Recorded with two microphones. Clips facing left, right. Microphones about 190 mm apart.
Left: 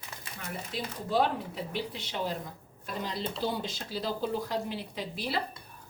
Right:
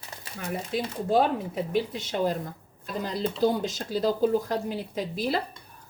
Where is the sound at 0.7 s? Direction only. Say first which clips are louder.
Right 6 dB; 50° right (ahead or behind).